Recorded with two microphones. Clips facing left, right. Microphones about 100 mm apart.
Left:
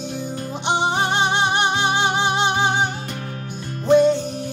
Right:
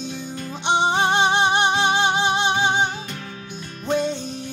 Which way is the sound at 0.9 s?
25° right (ahead or behind).